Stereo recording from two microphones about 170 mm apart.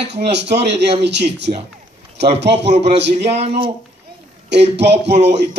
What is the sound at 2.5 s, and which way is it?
Speech, 40° right (ahead or behind).